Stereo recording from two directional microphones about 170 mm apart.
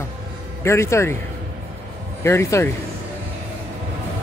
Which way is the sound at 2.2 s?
15° left (ahead or behind).